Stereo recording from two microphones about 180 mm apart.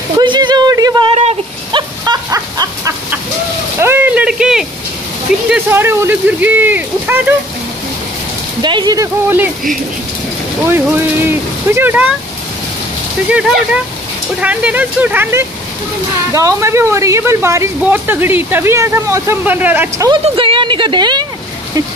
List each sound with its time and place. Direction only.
0.2 s a sound: 25° right (ahead or behind)
3.8 s speech: 10° right (ahead or behind)
8.6 s a woman's voice: 25° right (ahead or behind)
10.6 s speech: 10° right (ahead or behind)
14.4 s speech: 10° right (ahead or behind)
20.2 s a woman's voice: 30° right (ahead or behind)